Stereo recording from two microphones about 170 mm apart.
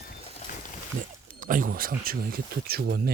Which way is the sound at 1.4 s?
50° right (ahead or behind).